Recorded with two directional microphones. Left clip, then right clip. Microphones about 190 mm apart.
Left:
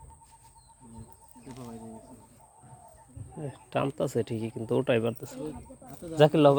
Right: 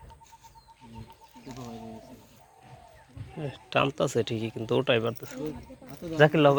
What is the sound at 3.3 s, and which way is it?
Speech, 10° left (ahead or behind).